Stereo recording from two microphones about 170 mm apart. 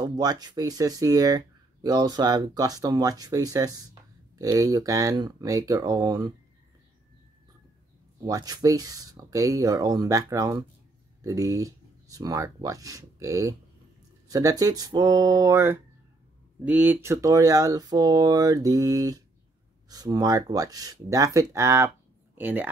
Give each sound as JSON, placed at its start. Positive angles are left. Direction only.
{"t": 0.0, "sound": "speech", "side_deg": -25}
{"t": 8.3, "sound": "speech", "side_deg": -20}